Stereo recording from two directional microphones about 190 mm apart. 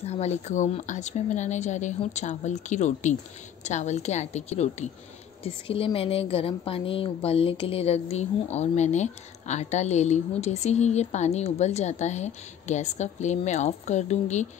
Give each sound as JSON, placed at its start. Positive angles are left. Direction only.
{"t": 0.0, "sound": "a woman's voice", "side_deg": 35}